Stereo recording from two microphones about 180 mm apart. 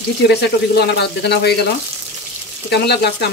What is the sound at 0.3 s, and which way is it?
Speech, 70° left (ahead or behind).